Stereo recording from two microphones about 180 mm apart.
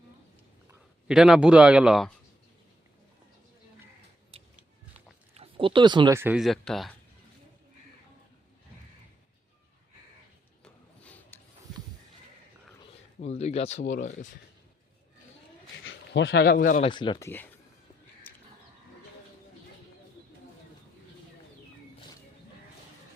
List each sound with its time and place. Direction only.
0.7 s speech: 5° right (ahead or behind)
5.3 s speech: 30° right (ahead or behind)
6.1 s speech: 10° right (ahead or behind)
6.4 s speech: centre (ahead or behind)
10.6 s a sound: 10° left (ahead or behind)
13.1 s speech: 35° left (ahead or behind)
15.8 s speech: 85° left; by 16.8 s 50° left (ahead or behind)
16.8 s speech: 25° left (ahead or behind)
17.2 s speech: 10° left (ahead or behind)
18.3 s a sound: 10° left (ahead or behind)